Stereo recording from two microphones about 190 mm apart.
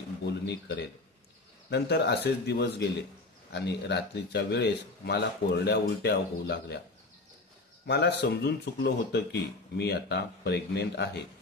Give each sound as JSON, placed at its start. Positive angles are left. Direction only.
{"t": 0.3, "sound": "speech", "side_deg": 65}
{"t": 7.8, "sound": "speech", "side_deg": 60}